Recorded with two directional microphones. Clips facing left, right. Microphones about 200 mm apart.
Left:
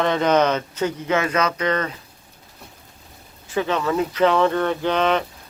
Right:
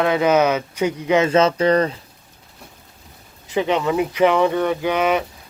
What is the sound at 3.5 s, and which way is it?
Speech, 15° right (ahead or behind).